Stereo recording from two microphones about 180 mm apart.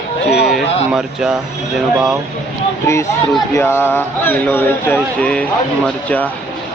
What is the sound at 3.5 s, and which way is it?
Speech, 15° left (ahead or behind).